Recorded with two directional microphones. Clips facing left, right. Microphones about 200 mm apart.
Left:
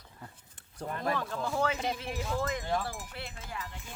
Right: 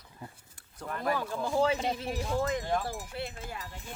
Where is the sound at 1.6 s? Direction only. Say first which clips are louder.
Right 5 dB; 30° right (ahead or behind).